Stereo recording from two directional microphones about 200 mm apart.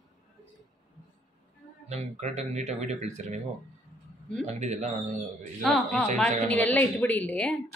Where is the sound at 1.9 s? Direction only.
30° right (ahead or behind).